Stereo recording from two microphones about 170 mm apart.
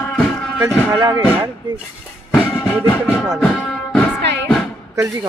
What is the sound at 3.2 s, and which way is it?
Music, centre (ahead or behind).